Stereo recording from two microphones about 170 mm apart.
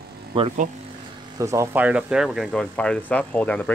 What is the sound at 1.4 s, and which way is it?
Speech, 20° right (ahead or behind).